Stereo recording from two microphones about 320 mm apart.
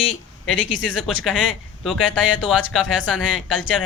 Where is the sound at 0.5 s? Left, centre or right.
Left.